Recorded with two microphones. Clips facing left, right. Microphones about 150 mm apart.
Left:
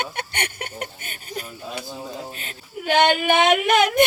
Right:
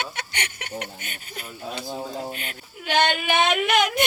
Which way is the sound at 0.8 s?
40° left (ahead or behind).